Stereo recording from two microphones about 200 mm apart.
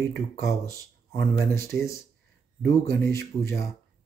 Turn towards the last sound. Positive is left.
turn(degrees=15)  # may be behind; listen again after turning